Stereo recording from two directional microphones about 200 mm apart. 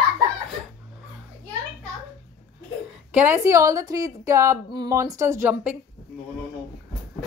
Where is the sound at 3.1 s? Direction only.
10° right (ahead or behind).